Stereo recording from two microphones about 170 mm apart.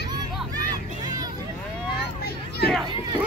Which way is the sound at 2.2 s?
70° left (ahead or behind).